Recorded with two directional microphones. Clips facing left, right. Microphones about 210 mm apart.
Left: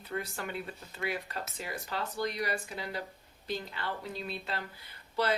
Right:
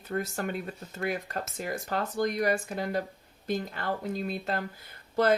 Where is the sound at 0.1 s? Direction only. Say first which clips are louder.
Right 6 dB; 45° right (ahead or behind).